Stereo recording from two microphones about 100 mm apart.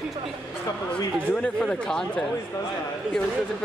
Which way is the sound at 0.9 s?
10° left (ahead or behind).